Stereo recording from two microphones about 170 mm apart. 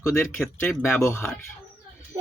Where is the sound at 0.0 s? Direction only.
15° left (ahead or behind).